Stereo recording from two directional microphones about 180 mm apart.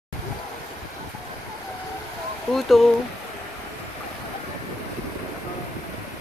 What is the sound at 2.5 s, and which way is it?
Speech, centre (ahead or behind).